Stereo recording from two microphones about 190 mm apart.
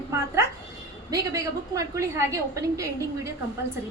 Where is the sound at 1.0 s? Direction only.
20° right (ahead or behind).